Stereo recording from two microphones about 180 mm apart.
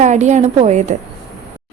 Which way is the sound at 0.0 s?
40° right (ahead or behind).